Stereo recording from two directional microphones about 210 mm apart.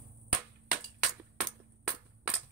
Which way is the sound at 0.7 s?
5° right (ahead or behind).